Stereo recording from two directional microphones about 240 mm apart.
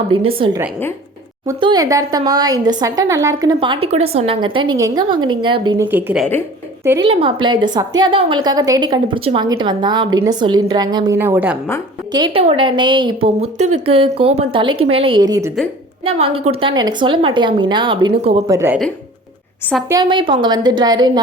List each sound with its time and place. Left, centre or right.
0.1 s a woman's voice: right
7.0 s a woman's voice: right
12.1 s a woman's voice: right
18.4 s speech: centre
19.9 s speech: centre